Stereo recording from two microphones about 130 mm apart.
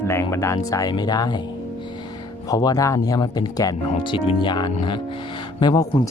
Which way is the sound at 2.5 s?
30° left (ahead or behind).